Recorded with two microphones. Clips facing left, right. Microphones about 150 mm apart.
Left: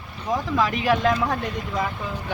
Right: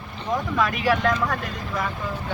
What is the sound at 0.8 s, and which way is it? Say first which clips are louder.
Speech: left 1 dB; 25° left (ahead or behind).